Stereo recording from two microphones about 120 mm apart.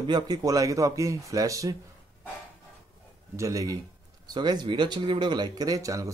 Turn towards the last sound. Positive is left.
turn(degrees=-30)  # may be behind; listen again after turning